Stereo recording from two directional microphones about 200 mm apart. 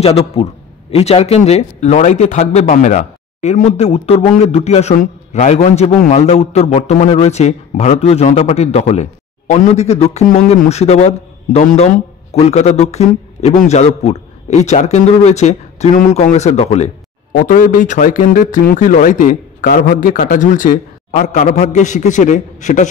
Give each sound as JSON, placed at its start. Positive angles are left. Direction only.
{"t": 0.0, "sound": "a man's voice", "side_deg": 30}